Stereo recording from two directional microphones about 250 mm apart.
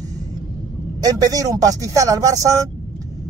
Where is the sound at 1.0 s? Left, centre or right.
Centre.